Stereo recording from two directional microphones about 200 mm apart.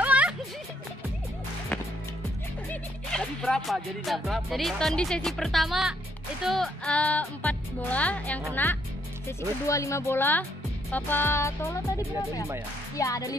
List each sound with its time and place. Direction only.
0.0 s music: 5° right (ahead or behind)
2.7 s music: 5° left (ahead or behind)
6.4 s speech: centre (ahead or behind)
12.9 s speech: 15° left (ahead or behind)